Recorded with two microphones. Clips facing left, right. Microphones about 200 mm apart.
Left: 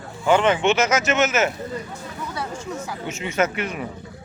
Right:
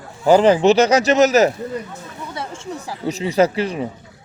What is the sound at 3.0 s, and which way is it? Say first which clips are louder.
Speech: right 7 dB; 35° right (ahead or behind).